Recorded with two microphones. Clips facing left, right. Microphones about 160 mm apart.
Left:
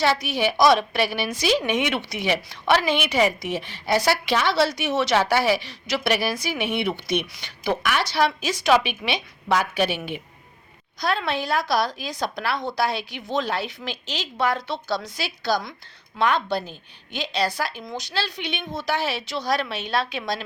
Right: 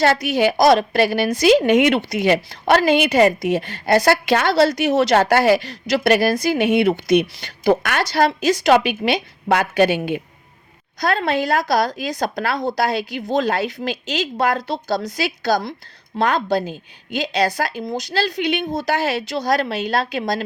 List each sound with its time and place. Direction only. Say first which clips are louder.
0.1 s a woman's voice: right 6 dB; 45° right (ahead or behind)
9.5 s speech: right 6 dB; 55° right (ahead or behind)
11.0 s a woman's voice: right 5 dB; 45° right (ahead or behind)